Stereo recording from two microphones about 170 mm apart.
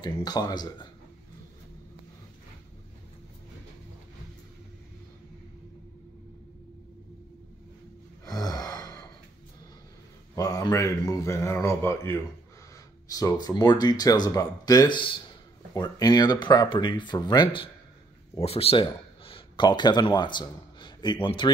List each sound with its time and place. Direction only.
0.0 s speech: 25° left (ahead or behind)
8.3 s gasp: 20° left (ahead or behind)
10.3 s speech: 20° left (ahead or behind)